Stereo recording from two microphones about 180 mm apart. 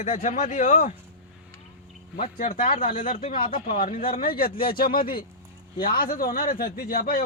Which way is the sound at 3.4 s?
50° left (ahead or behind).